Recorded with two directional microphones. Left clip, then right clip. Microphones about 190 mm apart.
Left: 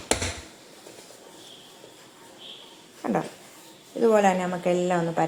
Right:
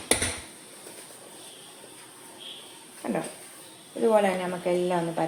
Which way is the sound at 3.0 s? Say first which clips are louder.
Left 4 dB; 25° left (ahead or behind).